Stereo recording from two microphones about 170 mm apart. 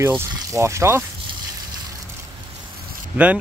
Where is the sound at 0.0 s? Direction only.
15° right (ahead or behind).